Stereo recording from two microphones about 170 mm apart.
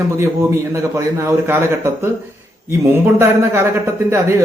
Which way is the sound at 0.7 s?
15° right (ahead or behind).